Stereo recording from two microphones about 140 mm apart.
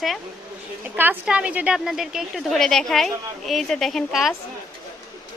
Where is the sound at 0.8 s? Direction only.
15° right (ahead or behind).